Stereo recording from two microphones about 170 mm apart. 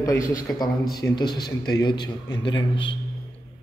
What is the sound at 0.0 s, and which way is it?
A man's voice, 20° left (ahead or behind).